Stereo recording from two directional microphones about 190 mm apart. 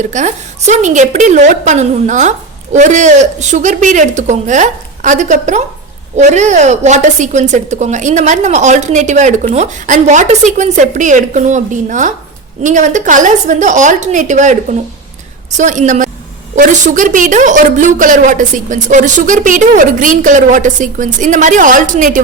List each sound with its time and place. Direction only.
0.0 s a woman's voice: 40° right (ahead or behind)